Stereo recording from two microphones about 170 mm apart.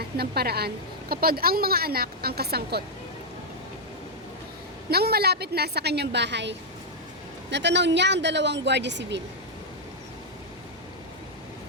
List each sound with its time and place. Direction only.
0.0 s a woman's voice: 65° right (ahead or behind)
4.9 s a woman's voice: 65° right (ahead or behind); by 9.2 s 90° right